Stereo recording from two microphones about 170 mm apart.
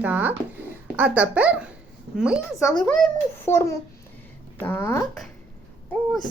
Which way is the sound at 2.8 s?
5° left (ahead or behind).